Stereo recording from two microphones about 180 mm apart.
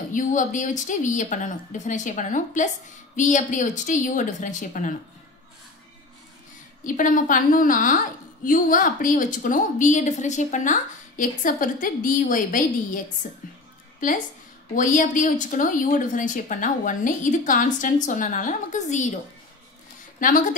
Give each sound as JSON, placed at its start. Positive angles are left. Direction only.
{"t": 0.1, "sound": "a woman's voice", "side_deg": 45}
{"t": 6.8, "sound": "a woman's voice", "side_deg": 45}
{"t": 20.2, "sound": "speech", "side_deg": 50}